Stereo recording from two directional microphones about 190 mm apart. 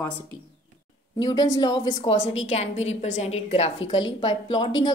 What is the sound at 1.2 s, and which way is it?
A woman's voice, 20° left (ahead or behind).